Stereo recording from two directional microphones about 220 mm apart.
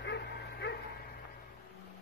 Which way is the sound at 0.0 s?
50° left (ahead or behind).